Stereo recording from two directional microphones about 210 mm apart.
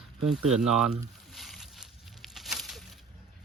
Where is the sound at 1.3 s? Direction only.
Centre (ahead or behind).